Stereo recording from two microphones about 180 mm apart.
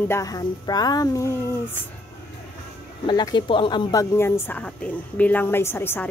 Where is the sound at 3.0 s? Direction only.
25° left (ahead or behind).